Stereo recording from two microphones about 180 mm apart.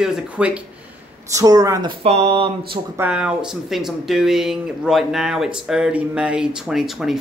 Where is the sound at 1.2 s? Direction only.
20° right (ahead or behind).